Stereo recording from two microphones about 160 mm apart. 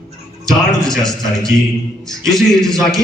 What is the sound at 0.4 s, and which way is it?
Speech, 5° left (ahead or behind).